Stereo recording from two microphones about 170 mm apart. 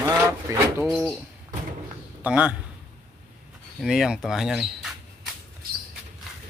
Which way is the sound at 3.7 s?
5° right (ahead or behind).